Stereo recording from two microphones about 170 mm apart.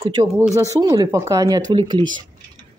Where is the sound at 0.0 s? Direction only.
25° right (ahead or behind).